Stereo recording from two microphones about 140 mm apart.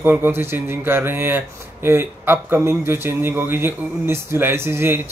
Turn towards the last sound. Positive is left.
turn(degrees=-15)  # may be behind; listen again after turning